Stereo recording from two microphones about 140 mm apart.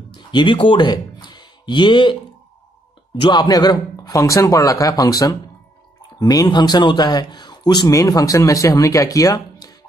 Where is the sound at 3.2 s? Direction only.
30° left (ahead or behind).